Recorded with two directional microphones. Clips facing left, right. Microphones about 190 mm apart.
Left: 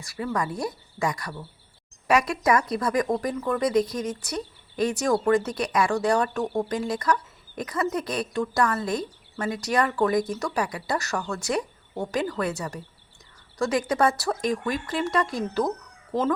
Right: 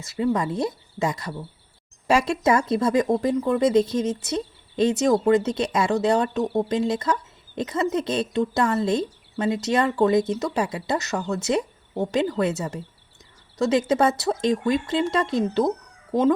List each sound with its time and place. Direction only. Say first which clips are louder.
0.0 s speech: right 5 dB; 25° right (ahead or behind)